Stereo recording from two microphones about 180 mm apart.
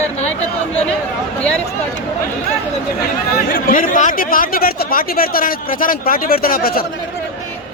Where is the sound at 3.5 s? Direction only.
50° left (ahead or behind).